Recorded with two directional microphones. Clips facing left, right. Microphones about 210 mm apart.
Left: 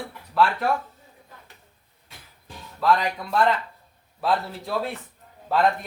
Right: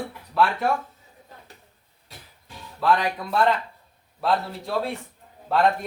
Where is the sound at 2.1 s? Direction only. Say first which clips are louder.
Right 3 dB; 40° right (ahead or behind).